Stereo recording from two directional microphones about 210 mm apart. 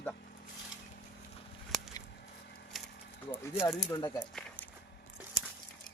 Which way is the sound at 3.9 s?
20° left (ahead or behind).